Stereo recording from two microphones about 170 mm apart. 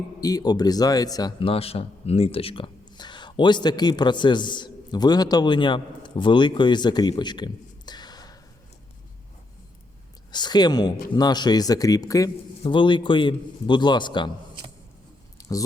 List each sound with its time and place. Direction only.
0.2 s a man's voice: 20° left (ahead or behind)
10.3 s a man's voice: 25° left (ahead or behind)
15.4 s chewing: 20° left (ahead or behind)